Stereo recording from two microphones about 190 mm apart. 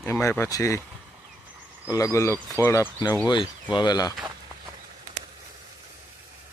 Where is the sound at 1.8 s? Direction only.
15° left (ahead or behind).